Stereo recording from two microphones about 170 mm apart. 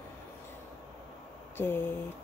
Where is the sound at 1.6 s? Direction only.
15° left (ahead or behind).